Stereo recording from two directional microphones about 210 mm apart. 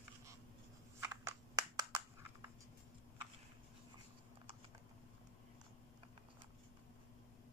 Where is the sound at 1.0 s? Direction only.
15° right (ahead or behind).